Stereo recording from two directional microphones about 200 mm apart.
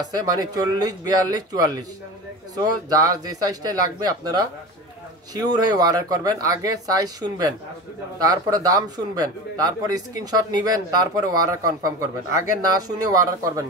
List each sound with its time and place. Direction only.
0.0 s speech: 20° right (ahead or behind)